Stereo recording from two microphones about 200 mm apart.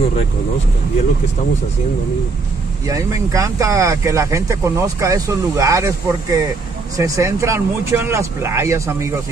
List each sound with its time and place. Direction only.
2.9 s speech: 15° right (ahead or behind)